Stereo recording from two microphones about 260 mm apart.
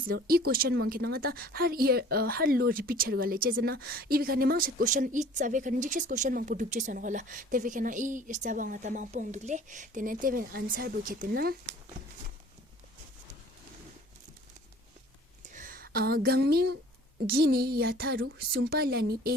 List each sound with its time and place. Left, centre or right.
0.1 s speech: right
15.5 s speech: right